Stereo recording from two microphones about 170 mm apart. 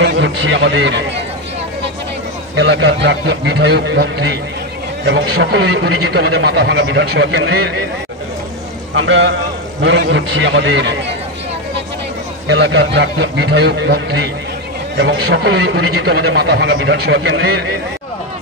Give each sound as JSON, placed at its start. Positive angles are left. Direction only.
{"t": 0.0, "sound": "a man's voice", "side_deg": -90}
{"t": 2.5, "sound": "a man's voice", "side_deg": -90}
{"t": 9.0, "sound": "a man's voice", "side_deg": -90}
{"t": 12.4, "sound": "a man's voice", "side_deg": -90}
{"t": 15.0, "sound": "a man's voice", "side_deg": -90}